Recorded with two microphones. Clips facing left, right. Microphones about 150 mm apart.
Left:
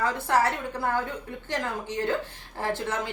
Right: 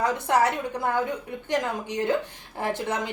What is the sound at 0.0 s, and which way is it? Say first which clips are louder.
A woman's voice: right 2 dB; 15° right (ahead or behind).